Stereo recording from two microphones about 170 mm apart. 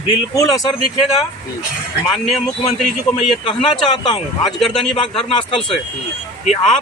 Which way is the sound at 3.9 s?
25° left (ahead or behind).